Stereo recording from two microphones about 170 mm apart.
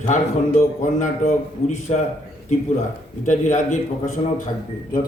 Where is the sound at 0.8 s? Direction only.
45° left (ahead or behind).